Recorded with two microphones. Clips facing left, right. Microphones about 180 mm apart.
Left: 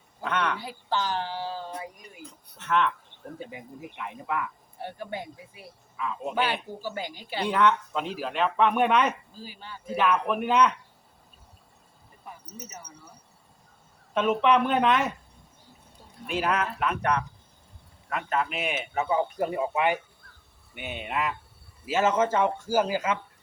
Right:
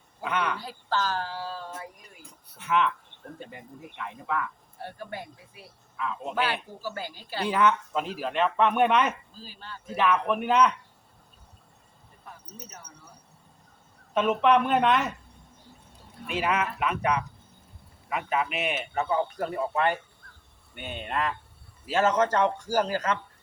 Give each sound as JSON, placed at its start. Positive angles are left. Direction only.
{"t": 0.2, "sound": "a sound", "side_deg": -5}
{"t": 0.6, "sound": "speech", "side_deg": 15}
{"t": 2.6, "sound": "speech", "side_deg": -5}
{"t": 3.3, "sound": "speech", "side_deg": 5}
{"t": 4.8, "sound": "speech", "side_deg": 20}
{"t": 6.0, "sound": "speech", "side_deg": 0}
{"t": 6.8, "sound": "speech", "side_deg": 15}
{"t": 7.4, "sound": "speech", "side_deg": -5}
{"t": 9.3, "sound": "speech", "side_deg": 15}
{"t": 9.8, "sound": "speech", "side_deg": 0}
{"t": 14.1, "sound": "speech", "side_deg": 0}
{"t": 16.2, "sound": "speech", "side_deg": 0}